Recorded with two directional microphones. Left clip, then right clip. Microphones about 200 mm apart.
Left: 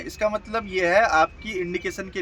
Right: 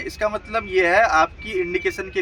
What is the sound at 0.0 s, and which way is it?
Speech, 40° left (ahead or behind).